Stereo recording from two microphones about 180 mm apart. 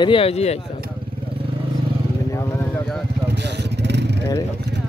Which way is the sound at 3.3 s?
70° right (ahead or behind).